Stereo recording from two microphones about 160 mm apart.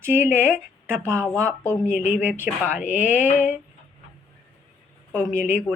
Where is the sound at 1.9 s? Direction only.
50° left (ahead or behind).